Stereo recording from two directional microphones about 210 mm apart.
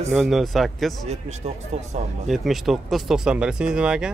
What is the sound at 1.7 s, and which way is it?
Speech, 30° right (ahead or behind).